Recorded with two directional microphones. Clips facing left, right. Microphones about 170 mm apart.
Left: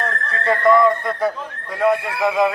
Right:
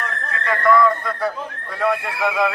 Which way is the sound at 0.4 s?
20° left (ahead or behind).